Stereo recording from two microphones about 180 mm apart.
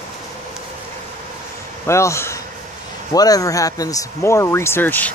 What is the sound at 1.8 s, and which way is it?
Speech, 15° left (ahead or behind).